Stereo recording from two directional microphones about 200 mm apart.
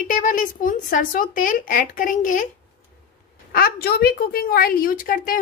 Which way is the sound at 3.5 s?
50° left (ahead or behind).